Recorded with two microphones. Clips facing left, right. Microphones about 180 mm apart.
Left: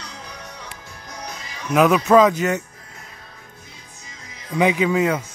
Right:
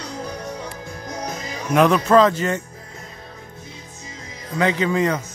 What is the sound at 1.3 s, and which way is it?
Music, 45° right (ahead or behind).